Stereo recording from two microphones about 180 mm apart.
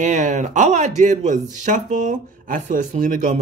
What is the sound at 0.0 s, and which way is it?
Speech, 45° right (ahead or behind).